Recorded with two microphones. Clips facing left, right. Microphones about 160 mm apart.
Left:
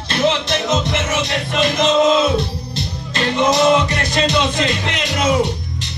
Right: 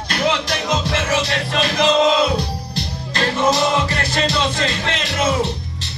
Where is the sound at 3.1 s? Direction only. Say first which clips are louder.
Left 2 dB; 20° left (ahead or behind).